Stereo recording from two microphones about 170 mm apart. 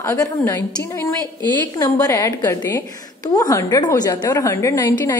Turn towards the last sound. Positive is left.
turn(degrees=20)  # may be behind; listen again after turning